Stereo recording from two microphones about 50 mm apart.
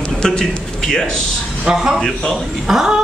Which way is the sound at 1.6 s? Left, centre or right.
Centre.